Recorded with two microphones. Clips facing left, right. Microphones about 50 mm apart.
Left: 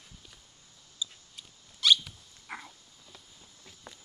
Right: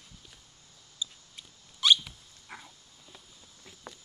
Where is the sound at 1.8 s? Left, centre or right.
Centre.